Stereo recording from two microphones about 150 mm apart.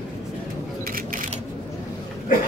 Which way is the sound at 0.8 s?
70° right (ahead or behind).